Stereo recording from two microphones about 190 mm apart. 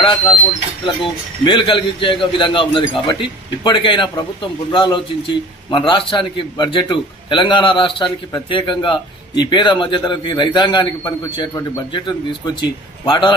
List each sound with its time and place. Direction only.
0.0 s speech: 25° left (ahead or behind)
1.5 s a man's voice: 25° left (ahead or behind)